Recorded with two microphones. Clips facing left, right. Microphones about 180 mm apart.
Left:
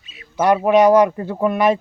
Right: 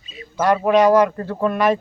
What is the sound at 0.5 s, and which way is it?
Speech, 15° left (ahead or behind).